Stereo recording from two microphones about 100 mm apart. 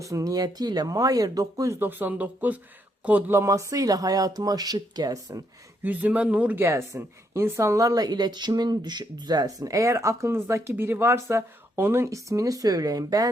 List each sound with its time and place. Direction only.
0.0 s a woman's voice: 35° right (ahead or behind)
1.8 s a woman's voice: 20° right (ahead or behind); by 5.4 s 40° right (ahead or behind)
5.8 s speech: 15° right (ahead or behind)
6.6 s a woman's voice: 25° right (ahead or behind)